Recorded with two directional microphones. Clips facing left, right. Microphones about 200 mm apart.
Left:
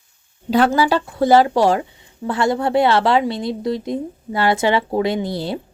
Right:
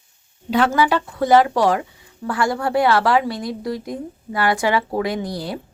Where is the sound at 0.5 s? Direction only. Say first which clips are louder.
Left 2 dB; 35° left (ahead or behind).